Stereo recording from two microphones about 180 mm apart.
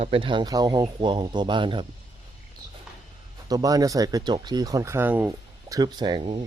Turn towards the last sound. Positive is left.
turn(degrees=-30)  # may be behind; listen again after turning